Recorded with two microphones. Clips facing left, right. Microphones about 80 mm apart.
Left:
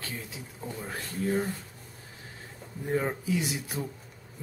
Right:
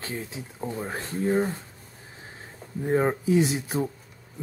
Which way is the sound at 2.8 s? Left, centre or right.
Right.